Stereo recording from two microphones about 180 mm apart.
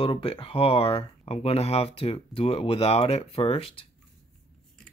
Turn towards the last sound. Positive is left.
turn(degrees=30)  # may be behind; listen again after turning